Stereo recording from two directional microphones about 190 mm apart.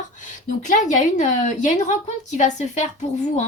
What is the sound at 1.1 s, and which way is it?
Speech, 40° left (ahead or behind).